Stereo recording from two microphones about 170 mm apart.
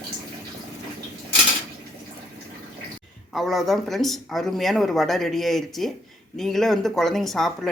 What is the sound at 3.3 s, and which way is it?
Speech, centre (ahead or behind).